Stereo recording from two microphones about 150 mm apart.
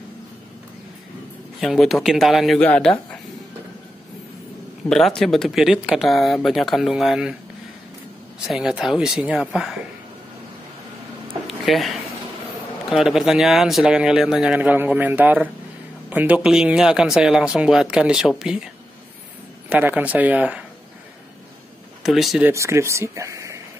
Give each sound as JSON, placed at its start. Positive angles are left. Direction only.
{"t": 1.6, "sound": "speech", "side_deg": 0}
{"t": 4.8, "sound": "speech", "side_deg": 5}
{"t": 8.5, "sound": "speech", "side_deg": -5}
{"t": 11.4, "sound": "a sound", "side_deg": 0}
{"t": 12.9, "sound": "speech", "side_deg": 0}
{"t": 19.7, "sound": "speech", "side_deg": -10}
{"t": 22.0, "sound": "speech", "side_deg": 0}
{"t": 22.5, "sound": "speech", "side_deg": -20}